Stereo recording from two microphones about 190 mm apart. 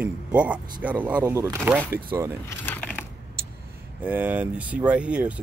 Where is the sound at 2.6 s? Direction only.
10° left (ahead or behind).